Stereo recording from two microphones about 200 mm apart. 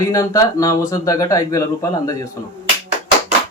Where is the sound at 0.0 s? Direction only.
15° left (ahead or behind).